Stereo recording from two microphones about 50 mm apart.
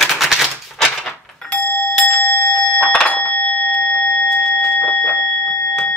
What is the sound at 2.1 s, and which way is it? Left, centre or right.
Bell, left.